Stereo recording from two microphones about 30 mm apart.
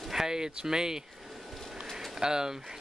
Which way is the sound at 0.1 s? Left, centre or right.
Centre.